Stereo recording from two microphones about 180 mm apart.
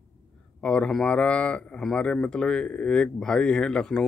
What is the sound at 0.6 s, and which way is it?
Speech, 5° left (ahead or behind).